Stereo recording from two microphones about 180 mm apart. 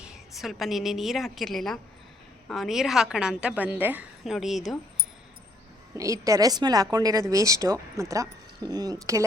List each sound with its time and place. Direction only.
0.0 s a woman's voice: 5° right (ahead or behind)
5.9 s a woman's voice: 20° right (ahead or behind)